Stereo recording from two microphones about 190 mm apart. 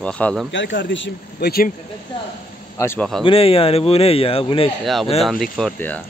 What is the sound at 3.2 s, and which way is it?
A man's voice, 30° left (ahead or behind).